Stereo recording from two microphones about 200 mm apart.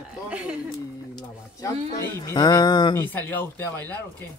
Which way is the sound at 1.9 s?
20° left (ahead or behind).